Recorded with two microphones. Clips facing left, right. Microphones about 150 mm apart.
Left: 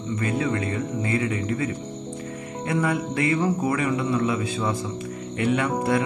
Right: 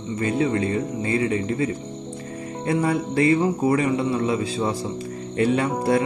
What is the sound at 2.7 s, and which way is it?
Music, 30° right (ahead or behind).